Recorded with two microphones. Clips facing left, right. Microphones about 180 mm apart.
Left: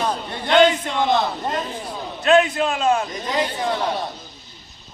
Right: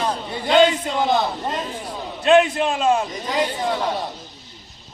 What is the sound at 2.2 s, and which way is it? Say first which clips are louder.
Speech: right 1 dB; 25° right (ahead or behind).